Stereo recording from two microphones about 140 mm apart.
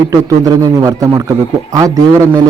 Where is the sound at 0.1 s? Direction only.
25° right (ahead or behind).